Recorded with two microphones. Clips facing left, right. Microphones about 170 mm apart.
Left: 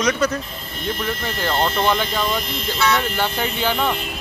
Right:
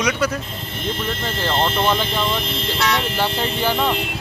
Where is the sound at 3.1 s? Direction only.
5° right (ahead or behind).